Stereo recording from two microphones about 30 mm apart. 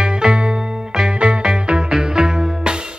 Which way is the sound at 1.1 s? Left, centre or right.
Right.